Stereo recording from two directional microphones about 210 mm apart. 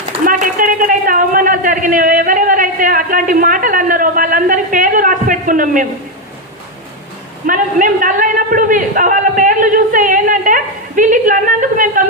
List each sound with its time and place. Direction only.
0.3 s a man's voice: 40° right (ahead or behind)
7.4 s a man's voice: 40° right (ahead or behind)